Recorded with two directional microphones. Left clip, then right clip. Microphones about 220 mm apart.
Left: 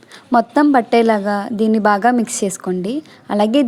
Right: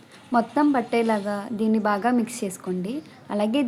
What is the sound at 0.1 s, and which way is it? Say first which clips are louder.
A woman's voice: left 8 dB; 35° left (ahead or behind).